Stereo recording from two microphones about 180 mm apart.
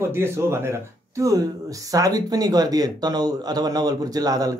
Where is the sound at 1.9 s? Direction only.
20° right (ahead or behind).